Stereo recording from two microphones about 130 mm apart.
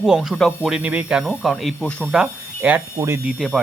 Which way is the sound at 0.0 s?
5° right (ahead or behind).